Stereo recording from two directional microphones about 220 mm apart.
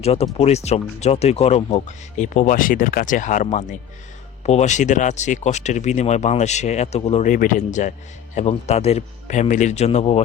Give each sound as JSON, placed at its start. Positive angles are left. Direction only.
{"t": 0.0, "sound": "speech", "side_deg": 30}